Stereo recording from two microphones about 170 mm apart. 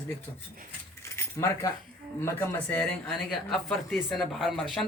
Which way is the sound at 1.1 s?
15° left (ahead or behind).